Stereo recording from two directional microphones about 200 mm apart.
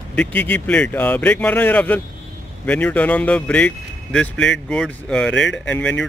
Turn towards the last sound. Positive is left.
turn(degrees=5)  # may be behind; listen again after turning